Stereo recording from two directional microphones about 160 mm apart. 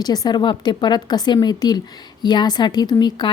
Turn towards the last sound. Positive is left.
turn(degrees=25)  # may be behind; listen again after turning